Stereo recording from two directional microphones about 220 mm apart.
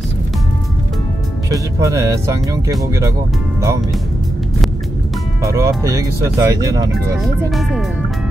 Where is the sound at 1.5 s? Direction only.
15° right (ahead or behind).